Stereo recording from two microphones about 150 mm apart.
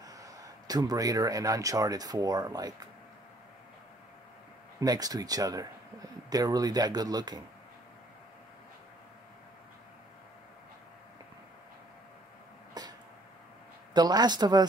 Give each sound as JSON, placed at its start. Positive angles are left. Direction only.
{"t": 0.0, "sound": "speech", "side_deg": -25}
{"t": 4.7, "sound": "speech", "side_deg": -25}
{"t": 12.8, "sound": "a sound", "side_deg": -25}
{"t": 13.9, "sound": "speech", "side_deg": -25}